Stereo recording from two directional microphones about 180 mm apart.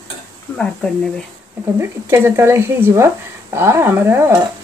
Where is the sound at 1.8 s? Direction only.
15° right (ahead or behind).